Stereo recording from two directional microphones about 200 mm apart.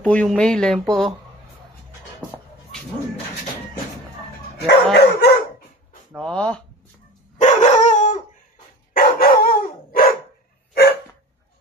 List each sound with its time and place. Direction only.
0.0 s speech: 5° left (ahead or behind)
4.6 s bow-wow: 60° left (ahead or behind)
6.1 s speech: 5° left (ahead or behind)
7.3 s dog: 35° left (ahead or behind)
8.9 s dog: 50° left (ahead or behind)